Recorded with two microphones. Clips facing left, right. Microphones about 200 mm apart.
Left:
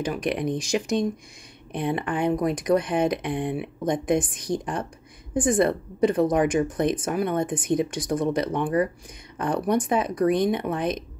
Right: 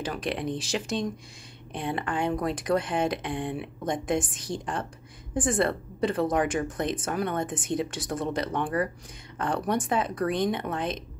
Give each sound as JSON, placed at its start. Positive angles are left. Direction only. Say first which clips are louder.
{"t": 0.0, "sound": "speech", "louder": "left 5 dB", "side_deg": 15}